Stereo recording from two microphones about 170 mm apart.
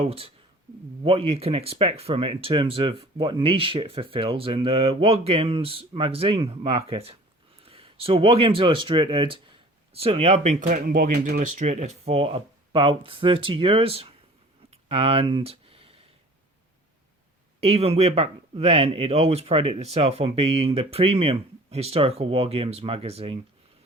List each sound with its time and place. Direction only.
0.0 s speech: 35° right (ahead or behind); by 11.4 s 55° right (ahead or behind)
11.6 s speech: 40° right (ahead or behind)
14.7 s a sound: 35° right (ahead or behind)
17.6 s speech: 35° right (ahead or behind)